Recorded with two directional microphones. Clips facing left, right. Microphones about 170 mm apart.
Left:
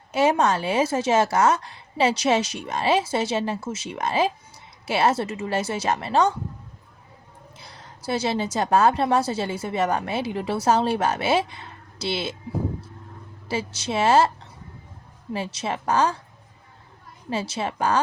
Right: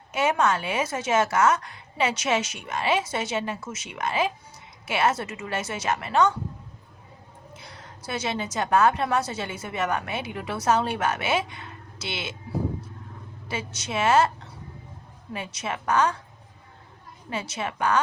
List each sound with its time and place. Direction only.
0.1 s a woman's voice: 35° left (ahead or behind)
7.5 s a woman's voice: 30° left (ahead or behind)
13.5 s a woman's voice: 30° left (ahead or behind)
15.3 s a woman's voice: 30° left (ahead or behind)
17.2 s a woman's voice: 30° left (ahead or behind)